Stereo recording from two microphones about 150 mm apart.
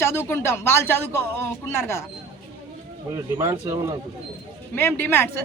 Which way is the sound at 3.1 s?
20° right (ahead or behind).